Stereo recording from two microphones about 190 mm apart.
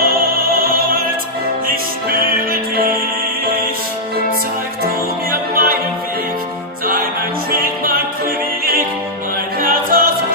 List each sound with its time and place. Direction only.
0.0 s opera: 50° right (ahead or behind)
2.0 s music: 50° right (ahead or behind)
5.3 s music: 50° right (ahead or behind)
7.5 s music: 50° right (ahead or behind)
9.6 s music: 50° right (ahead or behind)